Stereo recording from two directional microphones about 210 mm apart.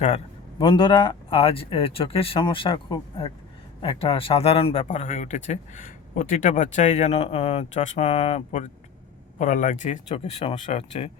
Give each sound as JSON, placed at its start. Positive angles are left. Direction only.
{"t": 0.6, "sound": "a man's voice", "side_deg": 25}